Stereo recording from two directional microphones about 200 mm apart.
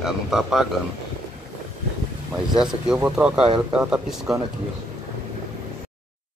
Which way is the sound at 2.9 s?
5° right (ahead or behind).